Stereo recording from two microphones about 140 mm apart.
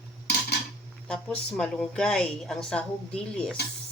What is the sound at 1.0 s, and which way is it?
A woman's voice, 5° left (ahead or behind).